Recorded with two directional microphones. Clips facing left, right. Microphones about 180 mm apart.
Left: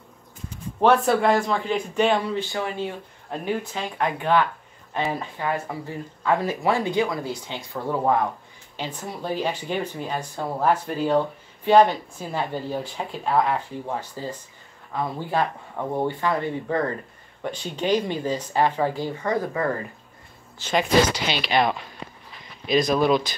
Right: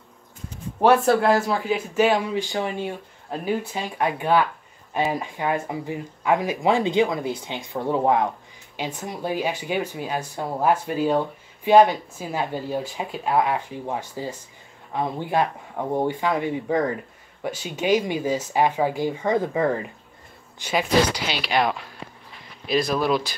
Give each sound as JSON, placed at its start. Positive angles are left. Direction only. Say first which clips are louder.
{"t": 0.7, "sound": "speech", "louder": "right 1 dB", "side_deg": -5}